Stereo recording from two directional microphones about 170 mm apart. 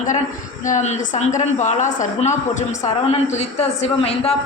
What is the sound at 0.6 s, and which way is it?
A woman's voice, 45° left (ahead or behind).